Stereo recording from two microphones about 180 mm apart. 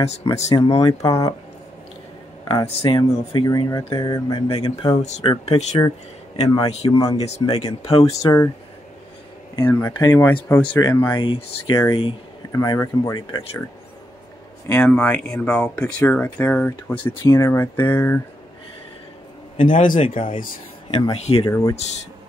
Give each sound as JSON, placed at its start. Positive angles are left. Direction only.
{"t": 0.2, "sound": "speech", "side_deg": 25}
{"t": 2.4, "sound": "speech", "side_deg": 30}
{"t": 5.0, "sound": "speech", "side_deg": 40}
{"t": 6.9, "sound": "speech", "side_deg": 20}
{"t": 9.6, "sound": "speech", "side_deg": 15}
{"t": 11.1, "sound": "speech", "side_deg": 30}
{"t": 12.5, "sound": "speech", "side_deg": 20}
{"t": 14.7, "sound": "speech", "side_deg": 10}
{"t": 19.5, "sound": "a man's voice", "side_deg": 45}
{"t": 20.9, "sound": "speech", "side_deg": 25}